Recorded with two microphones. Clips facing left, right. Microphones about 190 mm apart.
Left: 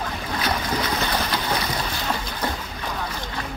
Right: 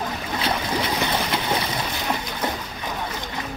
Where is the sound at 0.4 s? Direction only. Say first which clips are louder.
Even; 25° right (ahead or behind).